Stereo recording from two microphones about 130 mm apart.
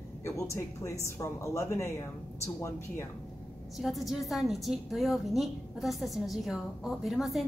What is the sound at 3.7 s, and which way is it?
A woman's voice, centre (ahead or behind).